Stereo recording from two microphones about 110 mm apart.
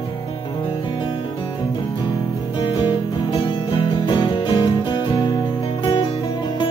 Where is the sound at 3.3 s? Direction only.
50° left (ahead or behind).